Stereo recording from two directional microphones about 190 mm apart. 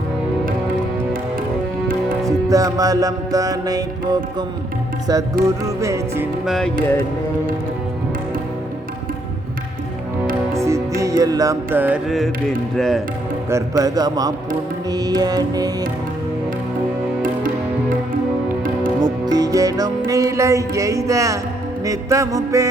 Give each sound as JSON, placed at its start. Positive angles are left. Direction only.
{"t": 2.2, "sound": "music", "side_deg": -20}
{"t": 6.4, "sound": "speech", "side_deg": 0}
{"t": 10.5, "sound": "music", "side_deg": -15}
{"t": 12.7, "sound": "speech", "side_deg": 0}
{"t": 13.5, "sound": "music", "side_deg": -15}
{"t": 18.9, "sound": "music", "side_deg": -20}